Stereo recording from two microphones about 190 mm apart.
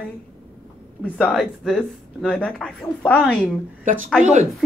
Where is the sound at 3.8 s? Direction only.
45° right (ahead or behind).